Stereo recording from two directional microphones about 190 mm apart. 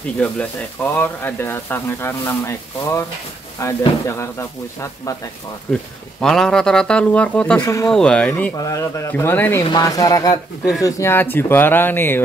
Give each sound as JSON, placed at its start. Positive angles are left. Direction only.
{"t": 0.2, "sound": "speech", "side_deg": 10}
{"t": 5.7, "sound": "speech", "side_deg": 5}
{"t": 7.6, "sound": "speech", "side_deg": 15}
{"t": 7.9, "sound": "speech", "side_deg": 5}